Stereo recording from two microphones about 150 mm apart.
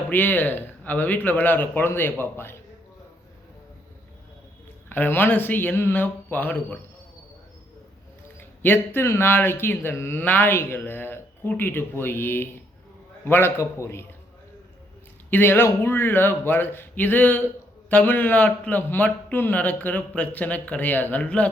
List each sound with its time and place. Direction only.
0.1 s speech: 10° left (ahead or behind)
4.9 s speech: 15° left (ahead or behind)
8.4 s speech: 15° left (ahead or behind)
15.3 s speech: 15° left (ahead or behind)